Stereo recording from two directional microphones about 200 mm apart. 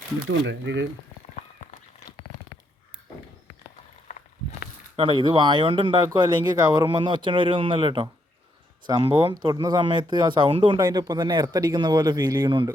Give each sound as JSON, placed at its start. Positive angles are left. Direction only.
{"t": 0.3, "sound": "speech", "side_deg": -65}
{"t": 4.9, "sound": "speech", "side_deg": -25}